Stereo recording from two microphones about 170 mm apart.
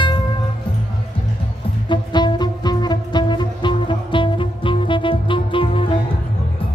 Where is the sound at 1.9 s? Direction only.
25° left (ahead or behind).